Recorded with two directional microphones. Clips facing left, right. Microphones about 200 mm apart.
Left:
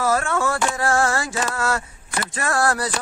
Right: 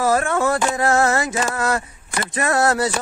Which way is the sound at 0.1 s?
20° right (ahead or behind).